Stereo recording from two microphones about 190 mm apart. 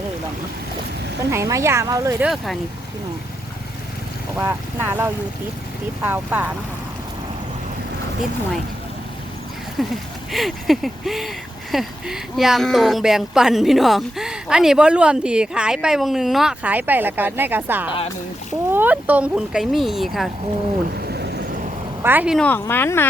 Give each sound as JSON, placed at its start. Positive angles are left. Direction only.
{"t": 1.3, "sound": "speech", "side_deg": -15}
{"t": 2.2, "sound": "speech", "side_deg": 0}
{"t": 4.4, "sound": "speech", "side_deg": -10}
{"t": 9.8, "sound": "speech", "side_deg": 0}
{"t": 21.1, "sound": "vehicle", "side_deg": -60}
{"t": 22.0, "sound": "speech", "side_deg": -10}
{"t": 22.4, "sound": "speech", "side_deg": 10}